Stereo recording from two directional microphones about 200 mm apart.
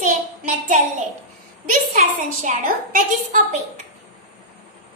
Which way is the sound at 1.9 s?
40° right (ahead or behind).